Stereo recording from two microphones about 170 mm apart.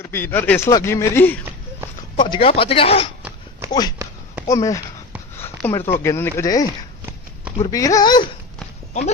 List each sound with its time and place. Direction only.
0.1 s a man's voice: 10° left (ahead or behind)
2.1 s speech: 30° left (ahead or behind)
3.7 s a man's voice: 25° left (ahead or behind)
8.9 s speech: 45° left (ahead or behind)